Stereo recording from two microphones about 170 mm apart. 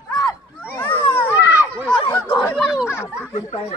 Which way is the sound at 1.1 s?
10° left (ahead or behind).